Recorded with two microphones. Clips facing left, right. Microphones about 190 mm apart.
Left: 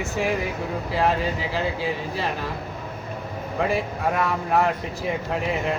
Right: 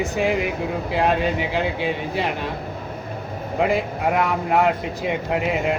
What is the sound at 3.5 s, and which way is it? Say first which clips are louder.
A man's voice: right 3 dB; 20° right (ahead or behind).